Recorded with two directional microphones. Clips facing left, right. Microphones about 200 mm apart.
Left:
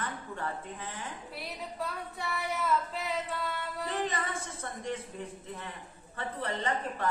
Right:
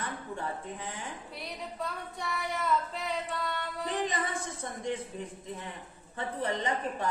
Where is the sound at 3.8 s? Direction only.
15° right (ahead or behind).